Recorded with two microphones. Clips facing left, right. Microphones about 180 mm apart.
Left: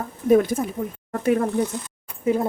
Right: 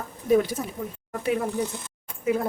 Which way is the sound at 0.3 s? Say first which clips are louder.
Left 4 dB; 50° left (ahead or behind).